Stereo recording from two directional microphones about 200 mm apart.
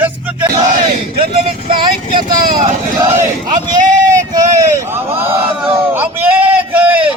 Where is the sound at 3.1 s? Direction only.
35° right (ahead or behind).